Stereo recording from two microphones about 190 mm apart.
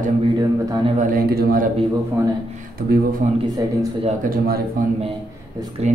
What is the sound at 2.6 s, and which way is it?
Speech, 40° right (ahead or behind).